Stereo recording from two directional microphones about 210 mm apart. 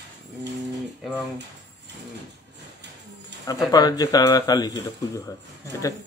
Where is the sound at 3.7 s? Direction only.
15° left (ahead or behind).